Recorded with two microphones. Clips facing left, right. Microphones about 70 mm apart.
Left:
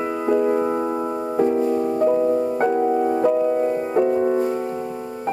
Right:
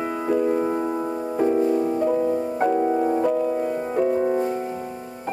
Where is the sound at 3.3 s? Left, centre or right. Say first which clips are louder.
Left 4 dB; left.